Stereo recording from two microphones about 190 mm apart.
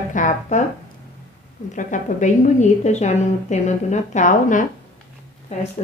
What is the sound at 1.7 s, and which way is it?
A woman's voice, 40° left (ahead or behind).